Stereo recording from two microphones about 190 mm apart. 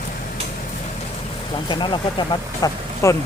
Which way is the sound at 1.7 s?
25° left (ahead or behind).